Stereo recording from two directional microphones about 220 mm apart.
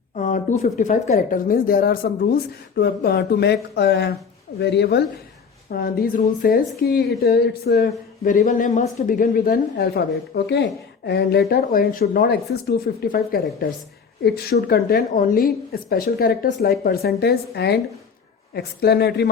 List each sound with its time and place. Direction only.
0.2 s a woman's voice: 35° left (ahead or behind)